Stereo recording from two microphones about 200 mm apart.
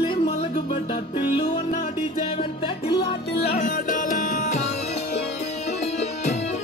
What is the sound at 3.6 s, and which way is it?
Music, 40° left (ahead or behind).